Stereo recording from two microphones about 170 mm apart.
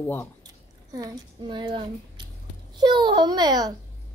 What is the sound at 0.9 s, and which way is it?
A child's voice, 25° right (ahead or behind).